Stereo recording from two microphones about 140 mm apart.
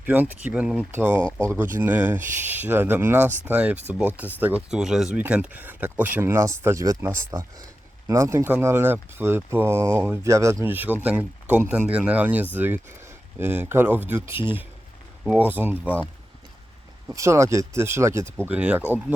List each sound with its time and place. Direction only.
0.1 s speech: 10° right (ahead or behind)
0.9 s speech: 15° right (ahead or behind)
17.2 s speech: 20° right (ahead or behind)